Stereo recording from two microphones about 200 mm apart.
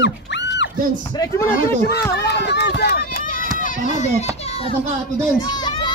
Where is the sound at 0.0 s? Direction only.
60° left (ahead or behind).